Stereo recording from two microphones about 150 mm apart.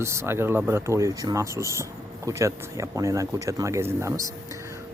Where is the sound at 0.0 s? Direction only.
20° right (ahead or behind).